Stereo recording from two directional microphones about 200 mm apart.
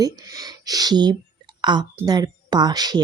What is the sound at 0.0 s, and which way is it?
A woman's voice, 20° right (ahead or behind).